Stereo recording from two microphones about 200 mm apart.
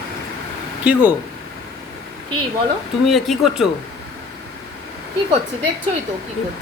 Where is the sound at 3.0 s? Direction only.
Centre (ahead or behind).